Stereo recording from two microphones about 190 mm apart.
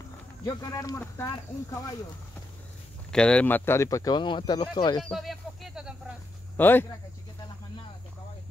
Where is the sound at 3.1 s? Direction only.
5° left (ahead or behind); by 5.0 s 20° left (ahead or behind).